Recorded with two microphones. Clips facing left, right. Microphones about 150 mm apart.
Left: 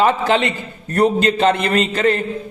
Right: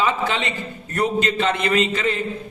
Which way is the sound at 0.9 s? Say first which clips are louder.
Left 6 dB; 35° left (ahead or behind).